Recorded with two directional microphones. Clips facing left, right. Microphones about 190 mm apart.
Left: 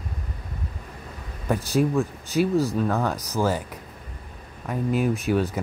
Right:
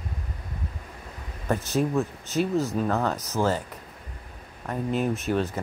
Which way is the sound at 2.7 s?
Centre (ahead or behind).